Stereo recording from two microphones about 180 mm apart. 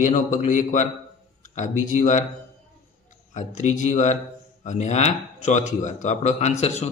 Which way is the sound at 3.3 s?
45° left (ahead or behind).